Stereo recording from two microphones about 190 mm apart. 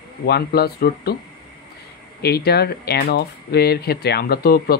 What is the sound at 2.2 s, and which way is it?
Speech, 60° left (ahead or behind).